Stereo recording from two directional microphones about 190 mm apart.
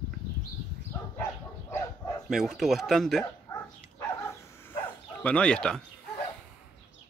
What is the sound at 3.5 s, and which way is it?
Dog, 15° left (ahead or behind).